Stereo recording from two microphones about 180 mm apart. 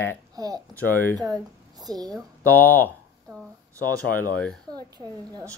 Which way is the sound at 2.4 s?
10° left (ahead or behind).